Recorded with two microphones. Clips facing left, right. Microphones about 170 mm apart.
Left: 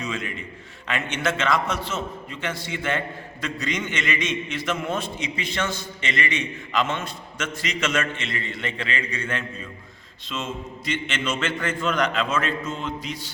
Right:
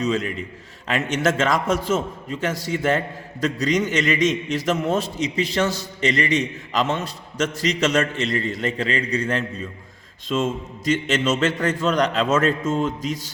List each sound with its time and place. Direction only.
0.0 s a man's voice: 40° right (ahead or behind)